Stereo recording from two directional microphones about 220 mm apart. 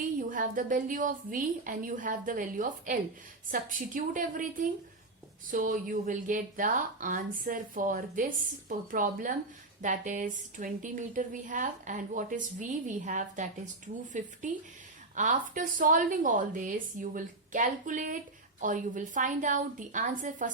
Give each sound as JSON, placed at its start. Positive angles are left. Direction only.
{"t": 0.0, "sound": "a woman's voice", "side_deg": -35}